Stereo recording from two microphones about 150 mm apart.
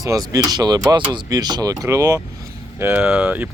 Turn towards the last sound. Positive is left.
turn(degrees=-10)  # may be behind; listen again after turning